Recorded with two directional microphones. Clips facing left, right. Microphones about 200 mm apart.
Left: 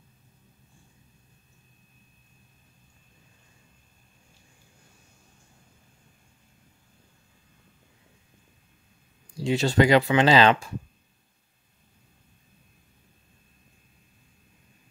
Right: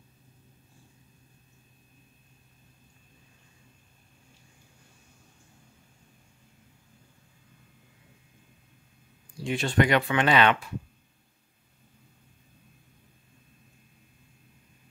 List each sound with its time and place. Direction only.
9.4 s speech: 25° left (ahead or behind)